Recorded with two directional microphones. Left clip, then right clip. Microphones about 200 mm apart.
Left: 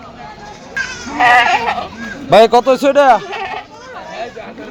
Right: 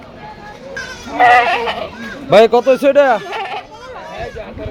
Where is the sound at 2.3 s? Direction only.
Centre (ahead or behind).